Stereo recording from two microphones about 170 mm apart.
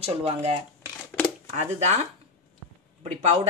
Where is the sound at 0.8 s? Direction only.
10° left (ahead or behind).